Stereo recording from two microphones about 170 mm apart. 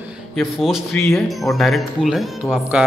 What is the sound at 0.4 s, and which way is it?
A man's voice, centre (ahead or behind).